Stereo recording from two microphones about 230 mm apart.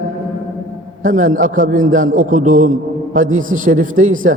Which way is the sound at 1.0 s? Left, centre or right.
Right.